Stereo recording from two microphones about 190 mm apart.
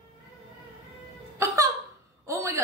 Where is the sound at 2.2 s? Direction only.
15° right (ahead or behind).